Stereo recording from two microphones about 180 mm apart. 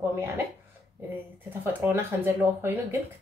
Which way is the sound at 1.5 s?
10° right (ahead or behind).